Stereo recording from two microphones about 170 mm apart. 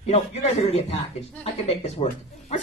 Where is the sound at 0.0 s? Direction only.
40° left (ahead or behind).